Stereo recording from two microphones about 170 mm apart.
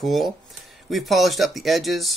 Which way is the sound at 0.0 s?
Centre (ahead or behind).